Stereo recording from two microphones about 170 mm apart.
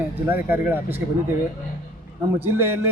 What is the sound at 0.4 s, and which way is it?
Speech, 10° right (ahead or behind).